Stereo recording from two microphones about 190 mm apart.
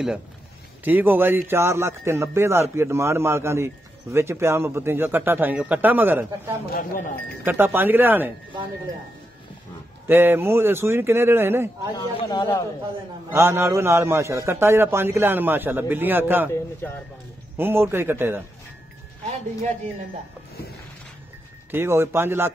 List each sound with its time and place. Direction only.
0.8 s speech: 10° right (ahead or behind)
6.7 s speech: 50° left (ahead or behind)
7.4 s speech: 10° right (ahead or behind)
10.0 s speech: 10° right (ahead or behind)
11.9 s speech: 20° left (ahead or behind)
13.3 s speech: 15° right (ahead or behind)
17.6 s speech: 10° right (ahead or behind)
21.6 s speech: 15° right (ahead or behind)